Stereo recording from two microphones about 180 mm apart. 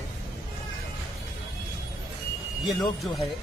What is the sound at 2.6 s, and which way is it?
Speech, centre (ahead or behind).